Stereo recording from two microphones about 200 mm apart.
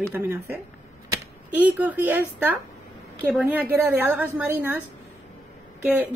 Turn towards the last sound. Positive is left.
turn(degrees=-5)  # may be behind; listen again after turning